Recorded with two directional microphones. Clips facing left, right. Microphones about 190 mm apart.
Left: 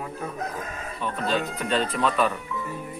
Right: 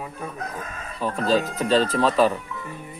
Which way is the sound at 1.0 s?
35° right (ahead or behind).